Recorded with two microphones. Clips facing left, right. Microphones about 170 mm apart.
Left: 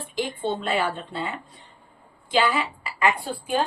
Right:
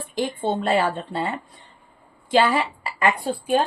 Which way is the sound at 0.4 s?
40° right (ahead or behind).